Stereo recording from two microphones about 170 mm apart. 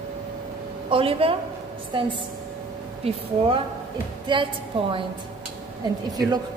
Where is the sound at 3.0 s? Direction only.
35° right (ahead or behind).